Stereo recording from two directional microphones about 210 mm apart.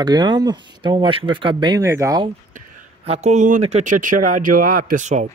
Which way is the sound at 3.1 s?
30° right (ahead or behind).